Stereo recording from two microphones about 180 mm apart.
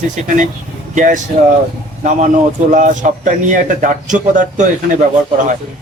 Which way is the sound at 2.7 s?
45° right (ahead or behind).